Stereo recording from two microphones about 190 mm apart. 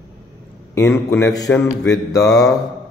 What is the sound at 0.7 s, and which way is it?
Mantra, 15° left (ahead or behind).